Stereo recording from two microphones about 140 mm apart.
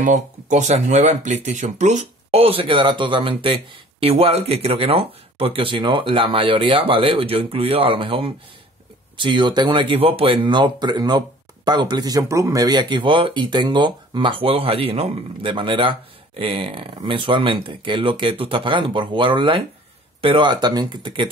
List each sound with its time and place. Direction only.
0.0 s speech: 60° right (ahead or behind); by 21.3 s 35° right (ahead or behind)